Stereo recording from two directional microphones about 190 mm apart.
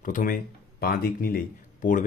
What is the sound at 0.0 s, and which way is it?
Speech, 45° left (ahead or behind).